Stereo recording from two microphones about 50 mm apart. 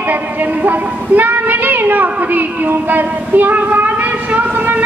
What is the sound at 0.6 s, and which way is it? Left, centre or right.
Child singing, right.